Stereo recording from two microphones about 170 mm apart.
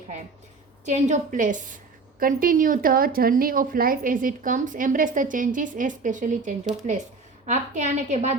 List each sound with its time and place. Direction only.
0.9 s a woman's voice: 45° right (ahead or behind)